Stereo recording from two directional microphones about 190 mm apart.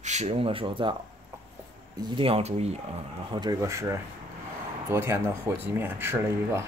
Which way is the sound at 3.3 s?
20° right (ahead or behind).